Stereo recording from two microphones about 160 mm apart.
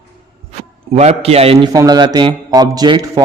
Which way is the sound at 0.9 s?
40° right (ahead or behind).